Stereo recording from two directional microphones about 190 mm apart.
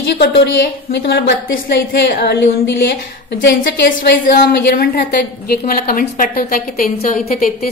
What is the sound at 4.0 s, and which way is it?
A woman's voice, 55° left (ahead or behind).